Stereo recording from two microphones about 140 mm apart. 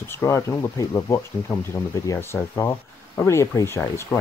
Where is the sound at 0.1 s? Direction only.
15° left (ahead or behind).